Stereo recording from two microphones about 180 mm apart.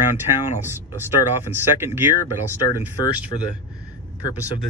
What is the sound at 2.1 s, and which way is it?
Speech, 20° left (ahead or behind).